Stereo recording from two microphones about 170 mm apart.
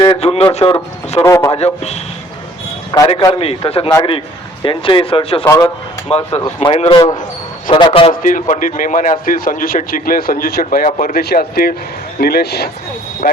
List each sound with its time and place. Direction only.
0.0 s a man's voice: 30° left (ahead or behind)
1.2 s a man's voice: 15° left (ahead or behind)
1.5 s a man's voice: 40° left (ahead or behind)
3.2 s a man's voice: 25° left (ahead or behind)
3.4 s a man's voice: 35° left (ahead or behind)
5.5 s a man's voice: 15° left (ahead or behind)
6.1 s a man's voice: 35° left (ahead or behind)
7.7 s a man's voice: 50° left (ahead or behind)